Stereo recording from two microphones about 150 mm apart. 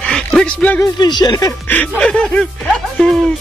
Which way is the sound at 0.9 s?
30° left (ahead or behind).